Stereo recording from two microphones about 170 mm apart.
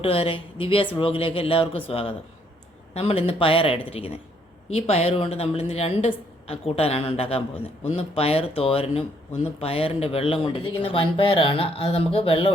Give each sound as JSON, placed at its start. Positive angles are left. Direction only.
{"t": 0.0, "sound": "a woman's voice", "side_deg": 35}